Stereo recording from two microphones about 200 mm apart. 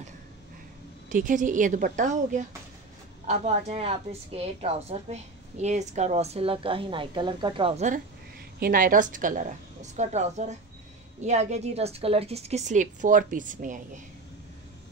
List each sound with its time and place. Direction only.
1.0 s a woman's voice: 40° right (ahead or behind)
8.5 s a woman's voice: 45° right (ahead or behind)